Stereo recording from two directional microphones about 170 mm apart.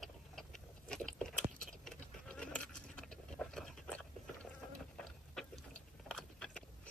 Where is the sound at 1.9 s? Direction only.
5° left (ahead or behind).